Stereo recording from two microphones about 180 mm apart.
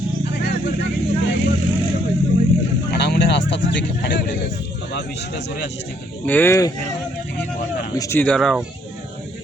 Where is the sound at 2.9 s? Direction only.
70° left (ahead or behind).